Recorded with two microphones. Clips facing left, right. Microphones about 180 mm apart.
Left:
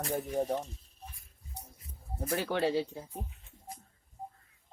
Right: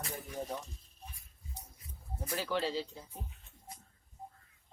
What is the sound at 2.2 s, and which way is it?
Music, 55° left (ahead or behind).